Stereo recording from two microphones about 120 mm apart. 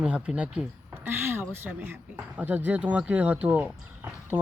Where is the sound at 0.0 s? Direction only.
10° right (ahead or behind).